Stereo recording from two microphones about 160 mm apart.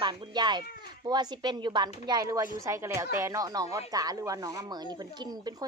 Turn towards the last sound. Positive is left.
turn(degrees=-25)  # may be behind; listen again after turning